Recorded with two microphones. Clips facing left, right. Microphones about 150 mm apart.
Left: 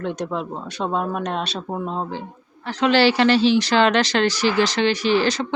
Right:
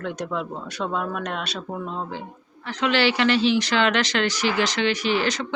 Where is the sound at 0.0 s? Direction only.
25° left (ahead or behind).